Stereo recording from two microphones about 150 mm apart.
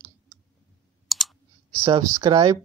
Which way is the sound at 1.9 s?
25° right (ahead or behind).